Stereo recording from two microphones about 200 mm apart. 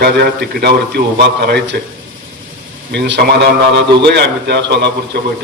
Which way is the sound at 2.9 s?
55° right (ahead or behind).